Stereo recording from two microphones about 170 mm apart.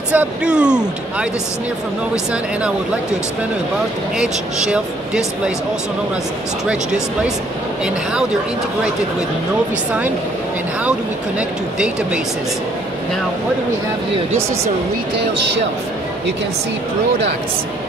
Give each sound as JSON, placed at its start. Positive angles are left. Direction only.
{"t": 0.1, "sound": "speech", "side_deg": -5}
{"t": 4.2, "sound": "speech", "side_deg": -5}
{"t": 7.8, "sound": "speech", "side_deg": -5}
{"t": 10.8, "sound": "speech", "side_deg": -5}
{"t": 15.1, "sound": "speech", "side_deg": -90}